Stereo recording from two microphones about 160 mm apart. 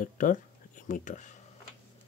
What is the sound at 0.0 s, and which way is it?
Speech, 55° left (ahead or behind).